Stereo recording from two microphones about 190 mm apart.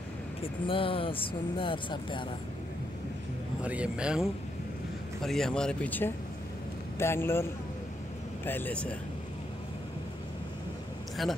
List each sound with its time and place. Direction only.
0.4 s speech: 30° left (ahead or behind)
3.6 s a man's voice: 5° right (ahead or behind)
11.2 s speech: centre (ahead or behind)